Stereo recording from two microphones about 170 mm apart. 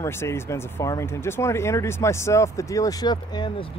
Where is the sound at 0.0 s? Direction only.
15° left (ahead or behind).